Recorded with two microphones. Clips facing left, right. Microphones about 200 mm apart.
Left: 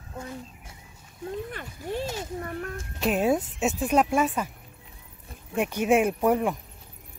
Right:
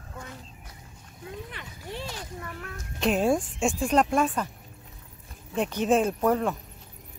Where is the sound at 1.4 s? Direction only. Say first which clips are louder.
Left 6 dB; 45° left (ahead or behind).